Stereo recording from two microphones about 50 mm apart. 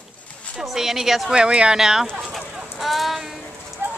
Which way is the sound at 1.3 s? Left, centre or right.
Centre.